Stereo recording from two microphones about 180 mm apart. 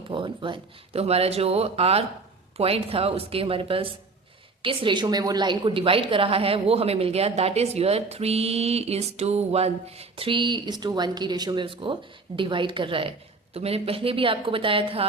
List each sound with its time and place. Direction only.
0.1 s a woman's voice: 25° right (ahead or behind)